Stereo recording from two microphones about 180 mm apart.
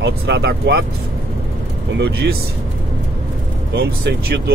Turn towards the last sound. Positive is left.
turn(degrees=-70)  # may be behind; listen again after turning